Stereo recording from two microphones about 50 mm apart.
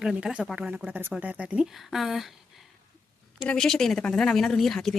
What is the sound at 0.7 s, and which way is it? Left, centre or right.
Speech, right.